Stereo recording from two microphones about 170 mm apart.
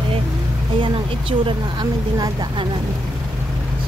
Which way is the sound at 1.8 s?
25° right (ahead or behind).